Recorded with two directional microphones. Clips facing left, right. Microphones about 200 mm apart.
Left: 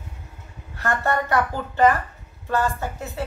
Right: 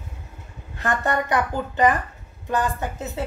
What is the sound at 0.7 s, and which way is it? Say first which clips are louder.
A woman's voice: even; 20° right (ahead or behind).